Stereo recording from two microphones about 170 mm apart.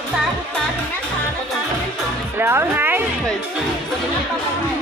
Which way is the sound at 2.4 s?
15° right (ahead or behind).